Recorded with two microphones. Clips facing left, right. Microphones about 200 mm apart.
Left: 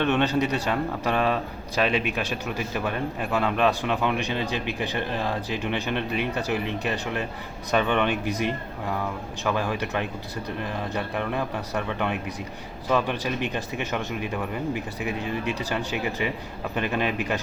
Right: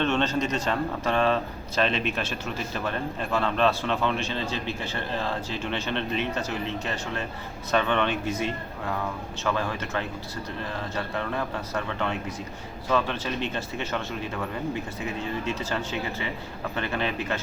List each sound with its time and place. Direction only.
0.0 s speech: 15° left (ahead or behind)